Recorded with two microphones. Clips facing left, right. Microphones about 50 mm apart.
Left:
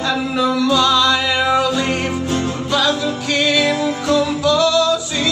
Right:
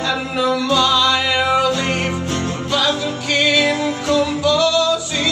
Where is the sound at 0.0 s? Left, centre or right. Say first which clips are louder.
Left 2 dB; centre.